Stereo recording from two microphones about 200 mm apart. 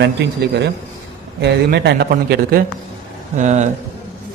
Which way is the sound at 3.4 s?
35° right (ahead or behind).